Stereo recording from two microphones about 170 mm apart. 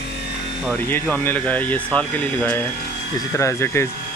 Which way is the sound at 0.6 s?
10° left (ahead or behind).